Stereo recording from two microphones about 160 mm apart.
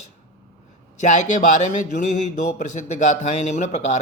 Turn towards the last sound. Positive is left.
turn(degrees=45)  # may be behind; listen again after turning